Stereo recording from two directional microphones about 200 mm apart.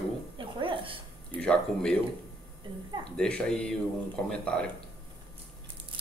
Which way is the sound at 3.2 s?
5° left (ahead or behind).